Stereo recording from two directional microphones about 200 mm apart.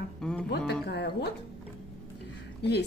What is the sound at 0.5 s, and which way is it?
Music, 55° left (ahead or behind).